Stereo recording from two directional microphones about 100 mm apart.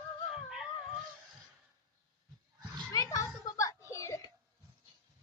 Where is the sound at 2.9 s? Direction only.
35° left (ahead or behind).